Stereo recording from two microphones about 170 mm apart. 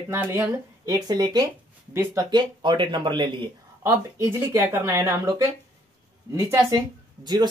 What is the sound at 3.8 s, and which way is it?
Speech, 15° right (ahead or behind).